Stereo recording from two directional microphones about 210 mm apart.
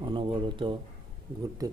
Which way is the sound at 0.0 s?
25° right (ahead or behind).